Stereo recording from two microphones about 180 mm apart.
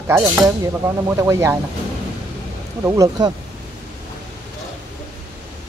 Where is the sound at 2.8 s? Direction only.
20° right (ahead or behind).